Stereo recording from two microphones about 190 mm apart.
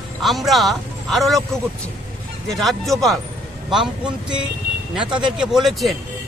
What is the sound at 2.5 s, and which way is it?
Speech, centre (ahead or behind).